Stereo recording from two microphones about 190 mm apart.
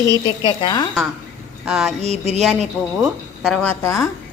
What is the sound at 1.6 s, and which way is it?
Speech, centre (ahead or behind).